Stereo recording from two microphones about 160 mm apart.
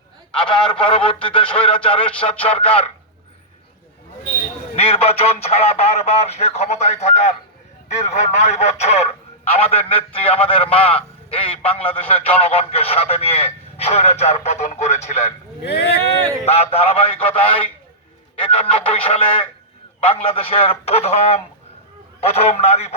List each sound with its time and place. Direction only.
0.4 s a man's voice: 30° left (ahead or behind)
4.7 s a man's voice: 40° left (ahead or behind)
15.6 s speech: 90° left
16.5 s a man's voice: 40° left (ahead or behind)